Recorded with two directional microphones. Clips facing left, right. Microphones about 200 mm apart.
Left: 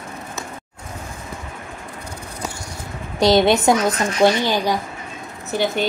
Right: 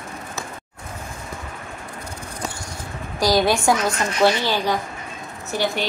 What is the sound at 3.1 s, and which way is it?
Speech, 25° left (ahead or behind).